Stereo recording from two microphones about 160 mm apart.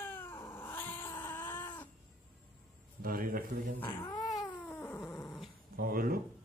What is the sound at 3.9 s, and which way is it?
Cat, 20° left (ahead or behind).